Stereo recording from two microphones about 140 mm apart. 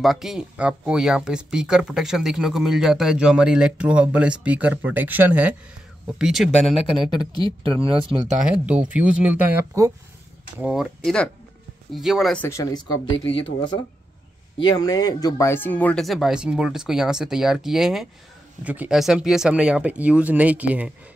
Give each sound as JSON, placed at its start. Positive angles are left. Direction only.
{"t": 0.0, "sound": "speech", "side_deg": 0}
{"t": 7.3, "sound": "speech", "side_deg": -40}
{"t": 8.5, "sound": "speech", "side_deg": -10}
{"t": 12.4, "sound": "speech", "side_deg": 20}